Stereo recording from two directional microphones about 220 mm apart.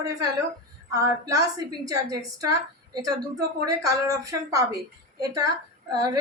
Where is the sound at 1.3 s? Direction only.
15° right (ahead or behind).